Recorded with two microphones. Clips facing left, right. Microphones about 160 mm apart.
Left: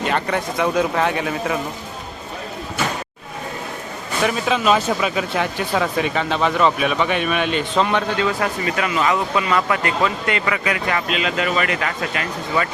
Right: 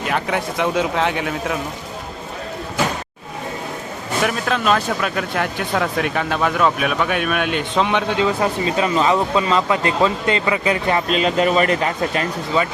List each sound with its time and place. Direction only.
0.0 s speech: centre (ahead or behind)
4.2 s speech: centre (ahead or behind)
8.2 s speech: 25° right (ahead or behind)